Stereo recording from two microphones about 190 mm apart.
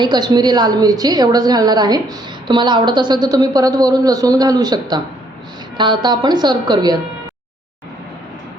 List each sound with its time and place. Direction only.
0.0 s a woman's voice: 20° right (ahead or behind)